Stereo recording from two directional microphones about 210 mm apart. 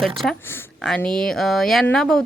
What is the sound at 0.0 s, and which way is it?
A woman's voice, centre (ahead or behind).